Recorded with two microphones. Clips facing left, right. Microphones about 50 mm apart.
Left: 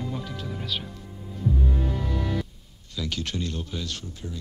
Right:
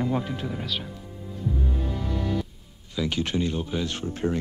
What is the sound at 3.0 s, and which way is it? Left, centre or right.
Speech, centre.